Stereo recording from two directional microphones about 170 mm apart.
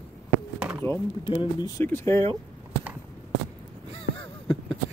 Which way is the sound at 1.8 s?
15° left (ahead or behind).